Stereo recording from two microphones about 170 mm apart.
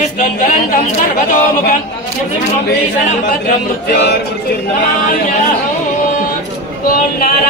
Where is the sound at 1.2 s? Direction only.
55° left (ahead or behind).